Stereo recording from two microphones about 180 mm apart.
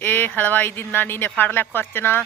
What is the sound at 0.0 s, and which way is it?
A woman's voice, 10° left (ahead or behind).